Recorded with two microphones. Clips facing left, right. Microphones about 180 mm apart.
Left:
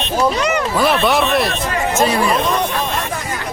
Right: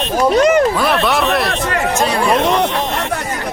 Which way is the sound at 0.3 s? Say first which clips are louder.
Right 7 dB; 50° right (ahead or behind).